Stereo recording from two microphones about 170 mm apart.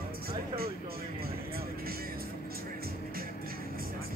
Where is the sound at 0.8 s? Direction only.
65° right (ahead or behind).